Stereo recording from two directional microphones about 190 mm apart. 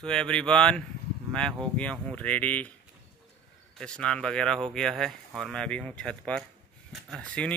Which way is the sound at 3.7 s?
5° left (ahead or behind).